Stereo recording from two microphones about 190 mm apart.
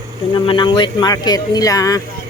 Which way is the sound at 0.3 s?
25° left (ahead or behind).